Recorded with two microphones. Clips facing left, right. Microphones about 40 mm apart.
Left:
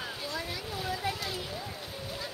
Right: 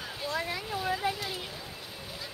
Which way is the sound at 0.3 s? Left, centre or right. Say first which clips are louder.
Right 8 dB; right.